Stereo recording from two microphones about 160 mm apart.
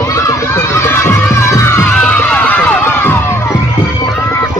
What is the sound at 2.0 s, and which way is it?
Music, 10° left (ahead or behind).